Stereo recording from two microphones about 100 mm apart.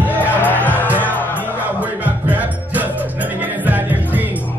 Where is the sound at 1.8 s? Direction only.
15° right (ahead or behind).